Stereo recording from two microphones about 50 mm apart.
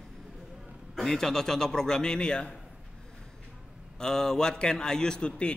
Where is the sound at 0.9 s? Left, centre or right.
Centre.